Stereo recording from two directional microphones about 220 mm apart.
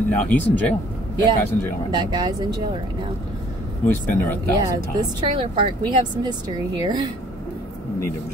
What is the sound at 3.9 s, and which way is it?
Speech, 10° left (ahead or behind).